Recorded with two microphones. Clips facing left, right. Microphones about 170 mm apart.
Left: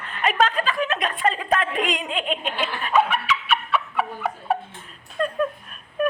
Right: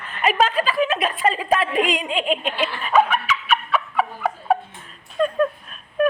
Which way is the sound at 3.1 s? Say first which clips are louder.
Right 2 dB; 45° right (ahead or behind).